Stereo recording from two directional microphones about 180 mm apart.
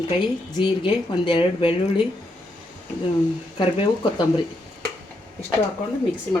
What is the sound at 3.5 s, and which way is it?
Speech, 30° left (ahead or behind).